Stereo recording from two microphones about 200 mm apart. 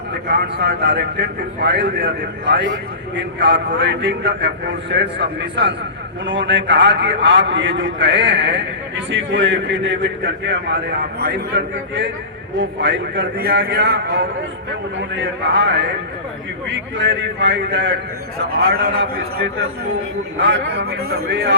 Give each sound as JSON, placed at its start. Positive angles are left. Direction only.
{"t": 0.1, "sound": "a man's voice", "side_deg": -55}
{"t": 11.2, "sound": "a man's voice", "side_deg": -55}
{"t": 18.7, "sound": "a man's voice", "side_deg": -50}